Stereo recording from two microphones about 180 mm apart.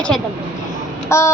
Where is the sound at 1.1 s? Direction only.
15° left (ahead or behind).